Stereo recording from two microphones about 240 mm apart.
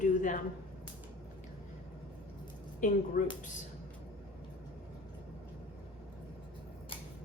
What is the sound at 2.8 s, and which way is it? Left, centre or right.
Speech, left.